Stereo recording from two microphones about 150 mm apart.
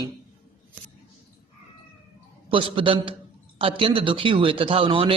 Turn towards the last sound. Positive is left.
turn(degrees=-35)  # may be behind; listen again after turning